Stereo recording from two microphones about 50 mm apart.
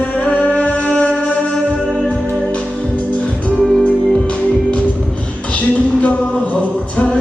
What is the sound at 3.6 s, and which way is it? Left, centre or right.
Music, centre.